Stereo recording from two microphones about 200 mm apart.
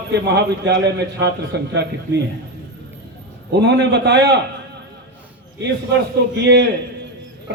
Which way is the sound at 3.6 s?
60° right (ahead or behind).